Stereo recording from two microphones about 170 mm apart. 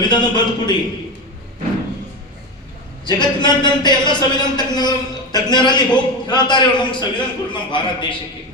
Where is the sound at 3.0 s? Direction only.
25° left (ahead or behind).